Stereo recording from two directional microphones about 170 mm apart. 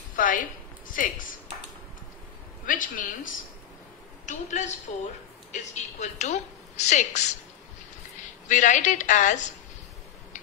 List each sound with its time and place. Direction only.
0.1 s a sound: 50° left (ahead or behind)
0.8 s speech: 50° left (ahead or behind)
2.6 s a woman's voice: 50° left (ahead or behind)
8.5 s a woman's voice: 45° left (ahead or behind)